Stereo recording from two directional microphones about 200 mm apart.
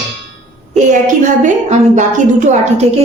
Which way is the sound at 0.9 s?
40° right (ahead or behind).